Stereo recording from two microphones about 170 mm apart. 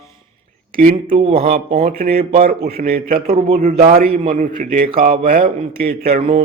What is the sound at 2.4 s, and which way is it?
Speech, 65° right (ahead or behind).